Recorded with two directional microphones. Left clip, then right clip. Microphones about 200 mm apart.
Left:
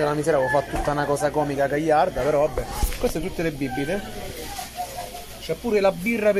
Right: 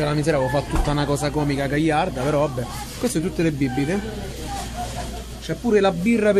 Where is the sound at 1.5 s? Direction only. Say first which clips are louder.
Left 1 dB; 25° right (ahead or behind).